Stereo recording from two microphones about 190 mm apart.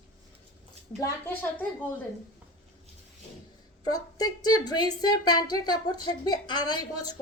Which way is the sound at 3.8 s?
20° left (ahead or behind).